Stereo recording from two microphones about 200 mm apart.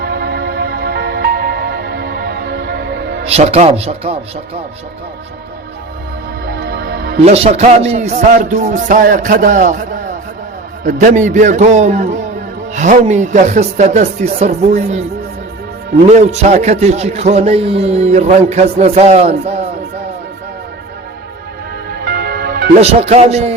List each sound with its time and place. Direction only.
0.0 s music: 55° right (ahead or behind)
3.2 s a man's voice: 30° right (ahead or behind)
6.4 s music: 50° right (ahead or behind)
7.2 s a man's voice: 30° right (ahead or behind)
16.0 s a man's voice: 35° right (ahead or behind)
22.0 s music: 50° right (ahead or behind)
22.8 s a man's voice: 30° right (ahead or behind)